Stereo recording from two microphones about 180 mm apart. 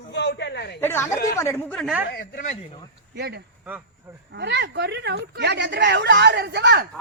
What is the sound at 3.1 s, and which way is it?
Speech, 65° right (ahead or behind).